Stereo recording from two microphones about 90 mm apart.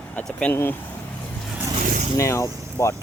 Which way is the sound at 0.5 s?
25° left (ahead or behind).